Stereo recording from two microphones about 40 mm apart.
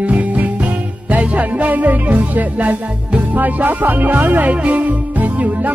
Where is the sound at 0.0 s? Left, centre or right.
Right.